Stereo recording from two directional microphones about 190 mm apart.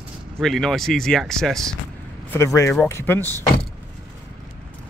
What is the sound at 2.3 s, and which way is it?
Speech, 15° left (ahead or behind).